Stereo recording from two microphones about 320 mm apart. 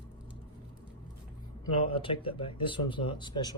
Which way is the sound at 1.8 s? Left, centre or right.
Centre.